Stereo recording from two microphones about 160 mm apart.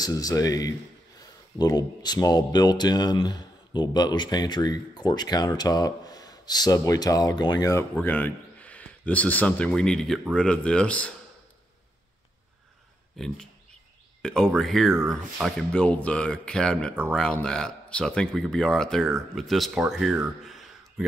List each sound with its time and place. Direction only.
0.0 s speech: 25° left (ahead or behind)
8.0 s a man's voice: 10° left (ahead or behind)
13.2 s speech: centre (ahead or behind)